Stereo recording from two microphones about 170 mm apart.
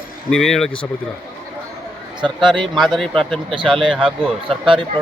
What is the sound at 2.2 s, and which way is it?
Speech, 30° right (ahead or behind).